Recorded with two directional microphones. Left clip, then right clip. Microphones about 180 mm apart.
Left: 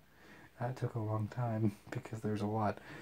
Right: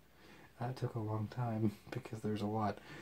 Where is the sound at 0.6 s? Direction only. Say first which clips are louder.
Left 2 dB; 20° left (ahead or behind).